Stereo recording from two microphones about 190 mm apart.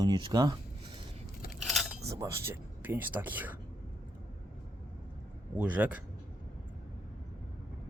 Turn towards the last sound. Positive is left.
turn(degrees=-5)  # may be behind; listen again after turning